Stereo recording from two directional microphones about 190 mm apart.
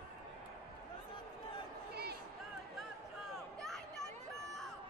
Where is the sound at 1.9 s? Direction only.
55° right (ahead or behind).